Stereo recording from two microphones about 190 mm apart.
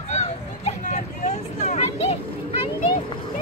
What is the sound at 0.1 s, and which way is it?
Vehicle, 35° left (ahead or behind).